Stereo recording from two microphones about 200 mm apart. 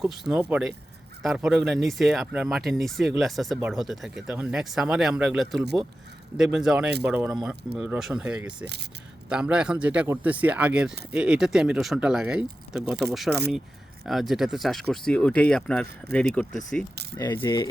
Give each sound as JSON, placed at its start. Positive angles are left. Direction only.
{"t": 0.0, "sound": "speech", "side_deg": 0}
{"t": 17.2, "sound": "speech", "side_deg": 20}